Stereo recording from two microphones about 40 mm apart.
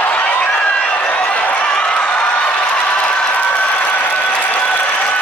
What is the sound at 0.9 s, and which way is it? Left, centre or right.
Run, left.